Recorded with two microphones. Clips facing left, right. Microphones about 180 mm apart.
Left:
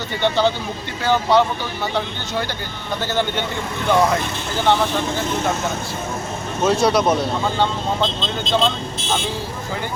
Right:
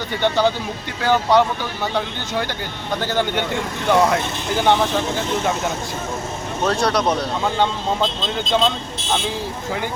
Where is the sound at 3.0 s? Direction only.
10° right (ahead or behind).